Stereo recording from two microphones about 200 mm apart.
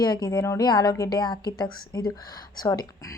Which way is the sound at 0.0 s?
20° left (ahead or behind).